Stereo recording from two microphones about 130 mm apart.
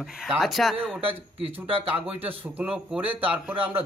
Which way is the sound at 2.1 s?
15° right (ahead or behind).